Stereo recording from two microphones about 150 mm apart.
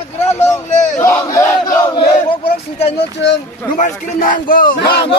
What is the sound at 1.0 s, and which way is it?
Battle cry, 20° left (ahead or behind).